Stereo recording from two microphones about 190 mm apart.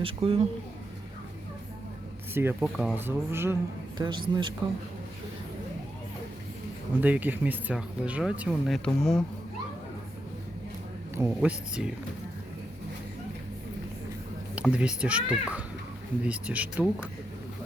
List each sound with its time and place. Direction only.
0.0 s speech: 30° right (ahead or behind)
2.3 s speech: 10° right (ahead or behind)
4.0 s speech: 25° right (ahead or behind)
7.0 s speech: 10° right (ahead or behind)
11.1 s speech: 10° right (ahead or behind)
14.5 s speech: 5° right (ahead or behind)